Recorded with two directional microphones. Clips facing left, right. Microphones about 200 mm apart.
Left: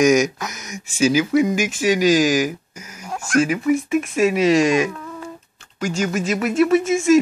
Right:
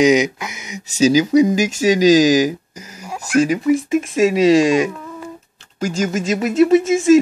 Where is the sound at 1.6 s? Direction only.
40° right (ahead or behind).